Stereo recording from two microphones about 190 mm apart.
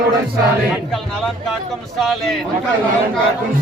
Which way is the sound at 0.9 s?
Centre (ahead or behind).